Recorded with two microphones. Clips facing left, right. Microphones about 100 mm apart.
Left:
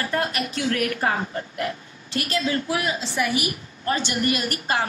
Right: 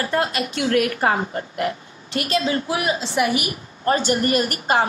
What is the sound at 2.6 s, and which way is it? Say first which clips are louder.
Speech: right 3 dB; 20° right (ahead or behind).